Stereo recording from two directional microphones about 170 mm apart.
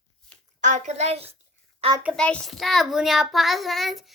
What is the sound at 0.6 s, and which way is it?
Speech, 45° right (ahead or behind).